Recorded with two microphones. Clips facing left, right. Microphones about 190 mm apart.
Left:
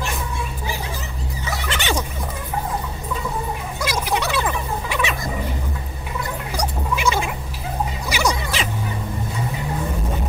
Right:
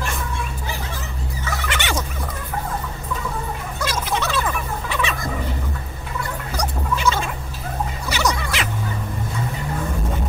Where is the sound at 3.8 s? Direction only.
10° left (ahead or behind).